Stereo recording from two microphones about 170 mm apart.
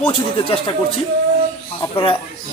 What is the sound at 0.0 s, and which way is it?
Speech, 35° left (ahead or behind).